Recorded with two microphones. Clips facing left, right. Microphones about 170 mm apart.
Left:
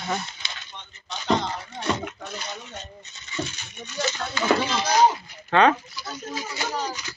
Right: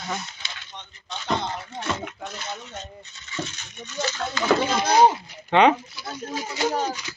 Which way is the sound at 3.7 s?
10° left (ahead or behind).